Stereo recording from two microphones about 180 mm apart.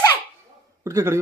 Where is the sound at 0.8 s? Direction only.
15° right (ahead or behind).